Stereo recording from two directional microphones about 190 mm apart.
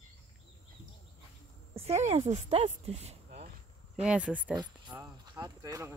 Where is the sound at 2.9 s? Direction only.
35° right (ahead or behind).